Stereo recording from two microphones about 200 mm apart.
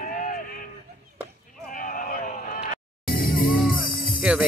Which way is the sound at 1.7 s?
40° left (ahead or behind).